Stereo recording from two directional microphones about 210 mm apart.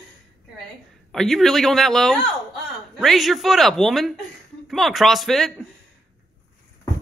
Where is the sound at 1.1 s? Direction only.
Centre (ahead or behind).